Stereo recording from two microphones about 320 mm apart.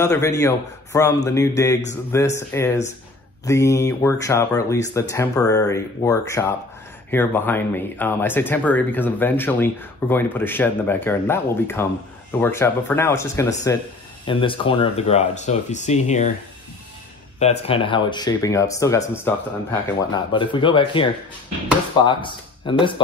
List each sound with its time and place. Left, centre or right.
0.0 s speech: centre
17.4 s speech: centre